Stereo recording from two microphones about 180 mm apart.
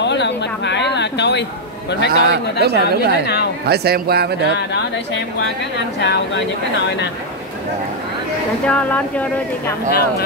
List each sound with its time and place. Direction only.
0.0 s a sound: 75° left (ahead or behind)
0.9 s a woman's voice: 75° left (ahead or behind)
2.6 s speech: 65° right (ahead or behind)
5.9 s a woman's voice: 75° left (ahead or behind)
8.6 s speech: 5° left (ahead or behind)